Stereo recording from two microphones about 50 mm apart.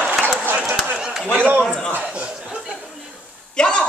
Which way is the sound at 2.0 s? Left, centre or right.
Right.